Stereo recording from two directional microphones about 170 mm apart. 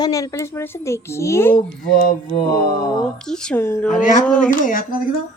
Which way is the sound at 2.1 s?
55° left (ahead or behind).